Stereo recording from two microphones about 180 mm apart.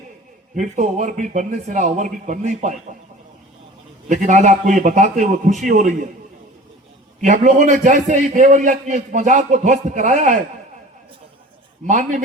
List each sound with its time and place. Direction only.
0.5 s a man's voice: 45° right (ahead or behind)
4.1 s a man's voice: 40° right (ahead or behind)
7.2 s a man's voice: 45° right (ahead or behind)
11.9 s a man's voice: 45° right (ahead or behind)